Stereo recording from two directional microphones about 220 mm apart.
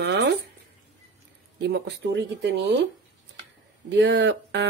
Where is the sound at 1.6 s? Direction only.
50° right (ahead or behind).